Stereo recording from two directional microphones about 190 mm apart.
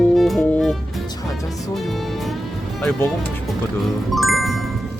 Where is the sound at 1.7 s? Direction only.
Centre (ahead or behind).